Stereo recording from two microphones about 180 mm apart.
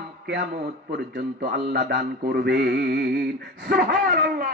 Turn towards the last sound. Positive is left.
turn(degrees=-60)  # may be behind; listen again after turning